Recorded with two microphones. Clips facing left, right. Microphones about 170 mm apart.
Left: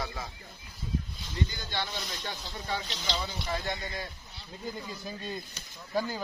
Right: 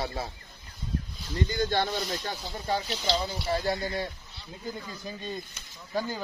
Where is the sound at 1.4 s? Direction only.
50° right (ahead or behind); by 4.1 s 30° right (ahead or behind).